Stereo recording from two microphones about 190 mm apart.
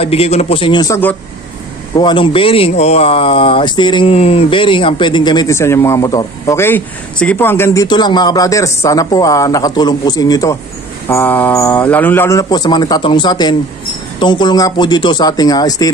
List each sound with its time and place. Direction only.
0.0 s speech: 30° left (ahead or behind)